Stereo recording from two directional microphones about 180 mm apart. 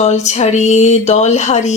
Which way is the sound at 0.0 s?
40° left (ahead or behind).